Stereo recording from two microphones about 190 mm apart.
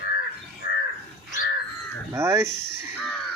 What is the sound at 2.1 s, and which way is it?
Speech, 15° right (ahead or behind).